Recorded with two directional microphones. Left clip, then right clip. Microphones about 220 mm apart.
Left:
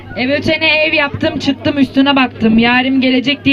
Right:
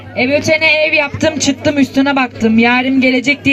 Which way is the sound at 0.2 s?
20° right (ahead or behind).